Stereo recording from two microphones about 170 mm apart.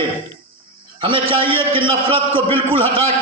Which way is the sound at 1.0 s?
30° right (ahead or behind).